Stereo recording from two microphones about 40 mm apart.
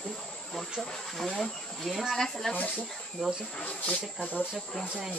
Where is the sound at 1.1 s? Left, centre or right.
Centre.